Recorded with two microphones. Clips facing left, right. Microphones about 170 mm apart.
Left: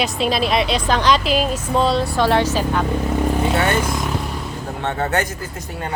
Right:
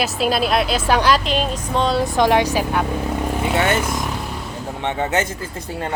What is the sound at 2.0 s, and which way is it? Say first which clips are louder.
Speech: right 1 dB; 15° right (ahead or behind).